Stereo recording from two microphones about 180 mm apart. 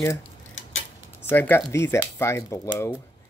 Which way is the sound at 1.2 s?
10° left (ahead or behind).